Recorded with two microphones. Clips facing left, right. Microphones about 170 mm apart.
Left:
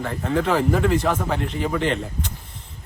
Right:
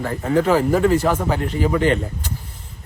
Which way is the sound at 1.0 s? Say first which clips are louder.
Right 3 dB; 5° right (ahead or behind).